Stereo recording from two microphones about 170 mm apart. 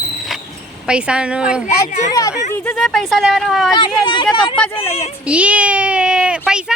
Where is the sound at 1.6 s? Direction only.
45° left (ahead or behind).